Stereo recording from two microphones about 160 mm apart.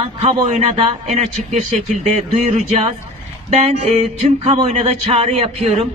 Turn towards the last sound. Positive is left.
turn(degrees=-45)  # may be behind; listen again after turning